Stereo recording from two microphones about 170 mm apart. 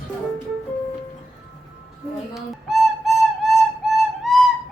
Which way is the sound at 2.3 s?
Centre (ahead or behind).